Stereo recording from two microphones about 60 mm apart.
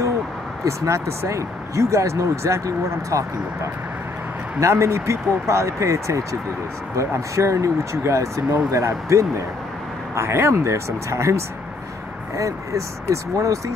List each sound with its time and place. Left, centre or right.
0.7 s speech: right
4.6 s speech: right
10.1 s speech: right